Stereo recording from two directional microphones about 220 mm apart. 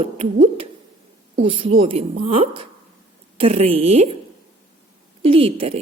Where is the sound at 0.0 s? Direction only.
30° right (ahead or behind).